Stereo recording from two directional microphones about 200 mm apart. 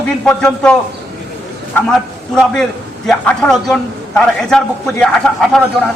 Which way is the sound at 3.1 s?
Centre (ahead or behind).